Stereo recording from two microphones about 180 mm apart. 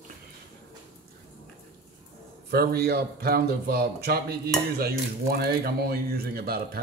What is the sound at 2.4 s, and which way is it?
Speech, 60° right (ahead or behind).